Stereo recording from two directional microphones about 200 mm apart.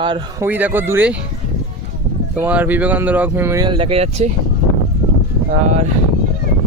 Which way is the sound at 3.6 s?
25° right (ahead or behind).